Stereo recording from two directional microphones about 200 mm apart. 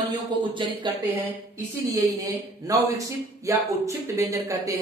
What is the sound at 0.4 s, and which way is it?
Speech, 25° right (ahead or behind).